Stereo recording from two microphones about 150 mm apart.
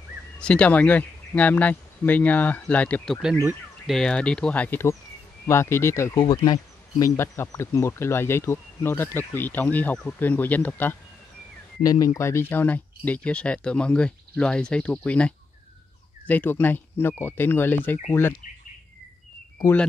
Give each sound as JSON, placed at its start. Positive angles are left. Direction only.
{"t": 0.4, "sound": "speech", "side_deg": 10}
{"t": 11.8, "sound": "speech", "side_deg": 25}